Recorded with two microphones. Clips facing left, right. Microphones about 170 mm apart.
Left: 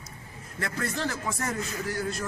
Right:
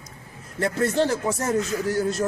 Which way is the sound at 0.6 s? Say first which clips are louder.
Right 9 dB; 30° right (ahead or behind).